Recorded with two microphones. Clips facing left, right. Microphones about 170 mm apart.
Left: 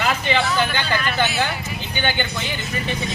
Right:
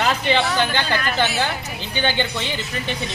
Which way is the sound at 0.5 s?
35° right (ahead or behind).